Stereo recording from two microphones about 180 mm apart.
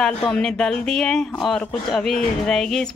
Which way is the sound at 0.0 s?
5° left (ahead or behind).